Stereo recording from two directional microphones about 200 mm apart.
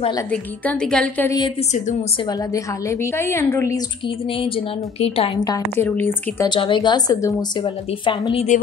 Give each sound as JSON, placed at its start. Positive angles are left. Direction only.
{"t": 0.3, "sound": "a woman's voice", "side_deg": 5}
{"t": 5.0, "sound": "a woman's voice", "side_deg": 30}
{"t": 6.5, "sound": "a woman's voice", "side_deg": 25}